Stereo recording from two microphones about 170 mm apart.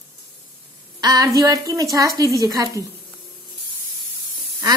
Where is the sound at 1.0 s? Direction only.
20° right (ahead or behind).